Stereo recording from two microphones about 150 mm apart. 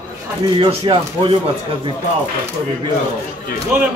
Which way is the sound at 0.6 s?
35° right (ahead or behind).